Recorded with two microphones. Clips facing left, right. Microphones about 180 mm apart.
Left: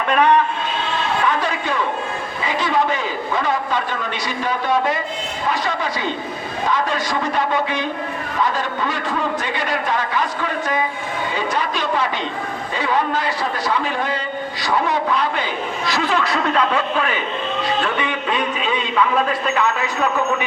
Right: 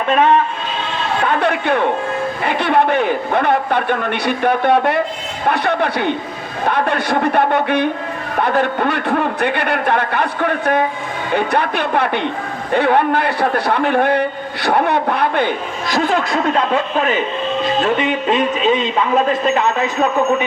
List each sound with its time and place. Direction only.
1.2 s a sound: 60° right (ahead or behind)
2.4 s a man's voice: 60° right (ahead or behind)
18.3 s speech: 25° right (ahead or behind)